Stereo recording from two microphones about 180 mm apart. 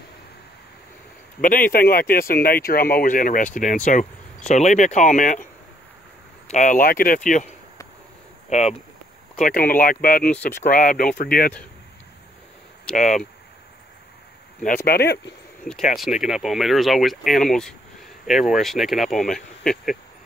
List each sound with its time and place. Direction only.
1.4 s speech: 50° left (ahead or behind)
6.5 s speech: 45° left (ahead or behind)
8.5 s speech: 40° left (ahead or behind)
9.4 s speech: 50° left (ahead or behind)
10.2 s speech: 5° left (ahead or behind)
10.6 s speech: 50° left (ahead or behind)
12.9 s speech: 45° left (ahead or behind)
14.9 s speech: 60° left (ahead or behind)
16.2 s speech: centre (ahead or behind)